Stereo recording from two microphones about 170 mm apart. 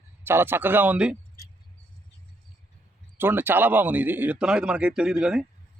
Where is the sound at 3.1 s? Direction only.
10° right (ahead or behind).